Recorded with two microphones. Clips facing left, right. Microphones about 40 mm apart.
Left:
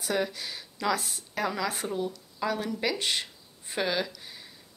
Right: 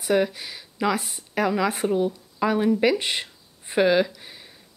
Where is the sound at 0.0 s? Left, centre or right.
Centre.